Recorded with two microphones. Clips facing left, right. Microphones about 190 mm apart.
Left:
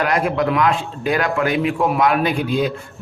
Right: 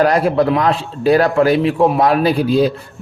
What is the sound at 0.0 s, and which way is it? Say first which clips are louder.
A man's voice: right 5 dB; 35° right (ahead or behind).